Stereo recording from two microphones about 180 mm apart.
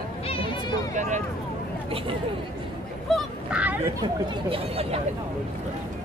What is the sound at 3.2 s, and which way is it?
Goose, 5° right (ahead or behind).